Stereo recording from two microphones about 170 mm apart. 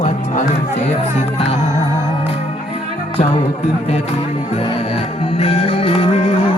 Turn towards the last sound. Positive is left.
turn(degrees=35)  # may be behind; listen again after turning